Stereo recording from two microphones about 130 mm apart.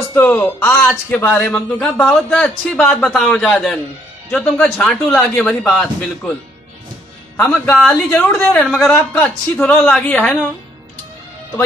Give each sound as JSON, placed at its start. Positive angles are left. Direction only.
{"t": 0.1, "sound": "a man's voice", "side_deg": 15}
{"t": 7.3, "sound": "speech", "side_deg": 15}